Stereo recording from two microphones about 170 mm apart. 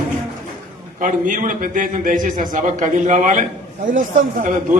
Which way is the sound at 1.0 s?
50° right (ahead or behind).